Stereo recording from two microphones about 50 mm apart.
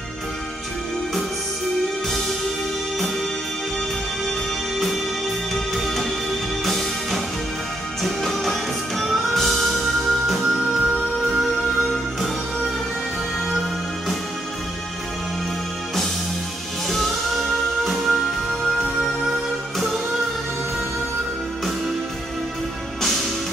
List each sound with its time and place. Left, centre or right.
2.0 s music: centre
5.5 s music: centre
13.5 s music: centre
16.9 s music: centre